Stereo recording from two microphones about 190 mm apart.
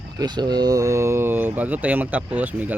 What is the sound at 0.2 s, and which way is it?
Speech, 20° right (ahead or behind).